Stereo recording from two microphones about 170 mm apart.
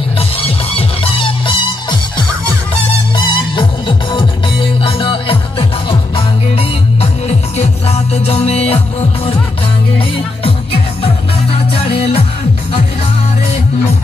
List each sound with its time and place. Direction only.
0.2 s music: 35° left (ahead or behind)